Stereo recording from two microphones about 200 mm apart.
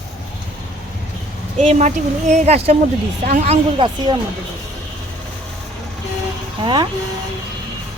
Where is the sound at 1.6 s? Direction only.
35° right (ahead or behind).